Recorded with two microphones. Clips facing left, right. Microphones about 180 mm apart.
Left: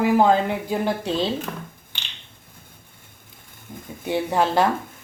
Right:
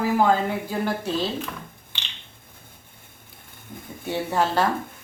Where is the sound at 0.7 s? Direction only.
20° left (ahead or behind).